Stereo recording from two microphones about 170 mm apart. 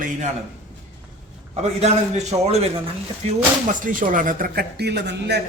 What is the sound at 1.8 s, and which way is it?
Speech, 40° right (ahead or behind).